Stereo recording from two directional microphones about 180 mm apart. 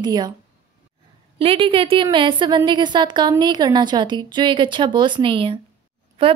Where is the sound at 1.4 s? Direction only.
30° right (ahead or behind).